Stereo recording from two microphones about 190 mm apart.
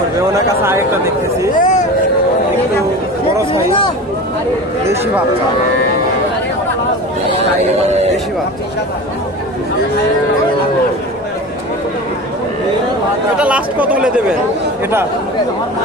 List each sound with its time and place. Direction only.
1.5 s speech: 40° left (ahead or behind)
13.4 s speech: 5° right (ahead or behind)